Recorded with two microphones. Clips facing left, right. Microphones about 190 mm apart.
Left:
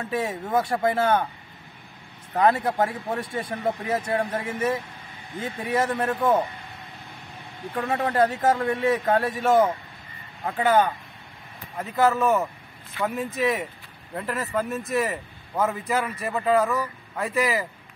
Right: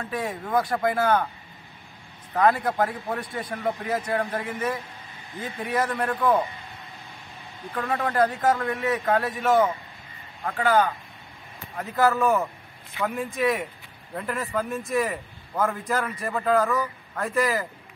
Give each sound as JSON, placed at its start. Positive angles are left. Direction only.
{"t": 0.1, "sound": "speech", "side_deg": 25}
{"t": 2.3, "sound": "speech", "side_deg": 25}
{"t": 7.7, "sound": "speech", "side_deg": 25}
{"t": 10.4, "sound": "speech", "side_deg": 20}
{"t": 11.8, "sound": "a man's voice", "side_deg": 0}